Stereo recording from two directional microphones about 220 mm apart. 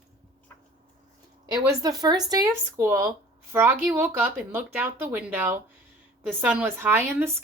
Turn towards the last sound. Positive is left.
turn(degrees=-10)  # may be behind; listen again after turning